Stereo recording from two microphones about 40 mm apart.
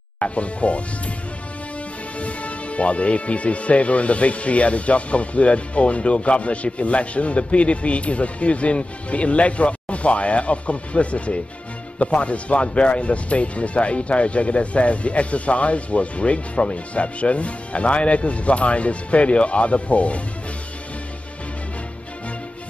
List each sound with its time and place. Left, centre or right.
0.2 s speech: left
2.1 s speech: left